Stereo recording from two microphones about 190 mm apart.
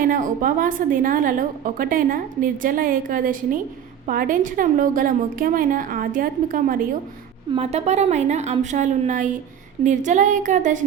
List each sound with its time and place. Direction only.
0.0 s a woman's voice: 45° right (ahead or behind)
7.5 s a woman's voice: 35° right (ahead or behind)